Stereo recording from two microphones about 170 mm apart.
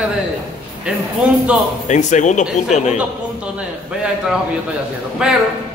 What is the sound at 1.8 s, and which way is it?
Speech, 45° left (ahead or behind).